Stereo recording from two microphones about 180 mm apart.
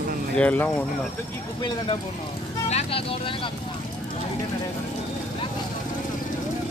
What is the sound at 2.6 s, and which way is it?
Speech, 35° left (ahead or behind).